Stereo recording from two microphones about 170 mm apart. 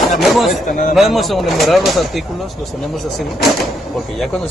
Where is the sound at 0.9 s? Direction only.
Centre (ahead or behind).